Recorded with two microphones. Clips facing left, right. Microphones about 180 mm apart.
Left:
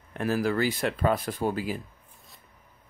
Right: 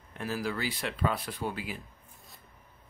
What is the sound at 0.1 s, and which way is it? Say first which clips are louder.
Speech: left 7 dB; 55° left (ahead or behind).